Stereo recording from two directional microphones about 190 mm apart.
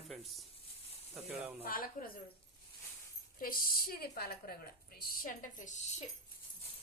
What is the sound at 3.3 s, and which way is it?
A woman's voice, 50° left (ahead or behind).